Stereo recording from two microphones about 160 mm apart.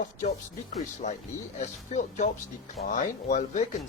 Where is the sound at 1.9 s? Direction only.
50° left (ahead or behind).